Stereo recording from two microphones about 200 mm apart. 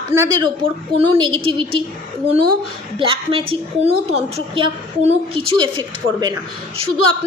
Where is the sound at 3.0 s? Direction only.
25° right (ahead or behind).